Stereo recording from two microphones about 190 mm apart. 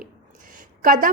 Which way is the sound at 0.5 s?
45° right (ahead or behind).